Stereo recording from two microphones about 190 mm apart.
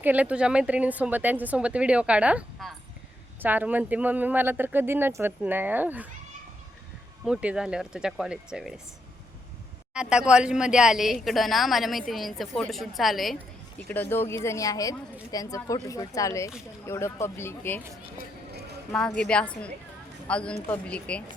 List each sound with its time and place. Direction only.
0.0 s speech: 10° right (ahead or behind)
7.3 s speech: 5° right (ahead or behind)
9.9 s speech: 5° right (ahead or behind); by 17.8 s 10° left (ahead or behind)
18.9 s speech: centre (ahead or behind)